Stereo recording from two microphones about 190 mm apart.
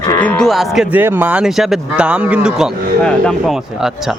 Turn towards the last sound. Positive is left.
turn(degrees=0)  # may be behind; listen again after turning